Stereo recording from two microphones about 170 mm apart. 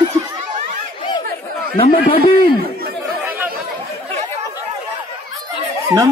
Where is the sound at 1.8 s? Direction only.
35° left (ahead or behind).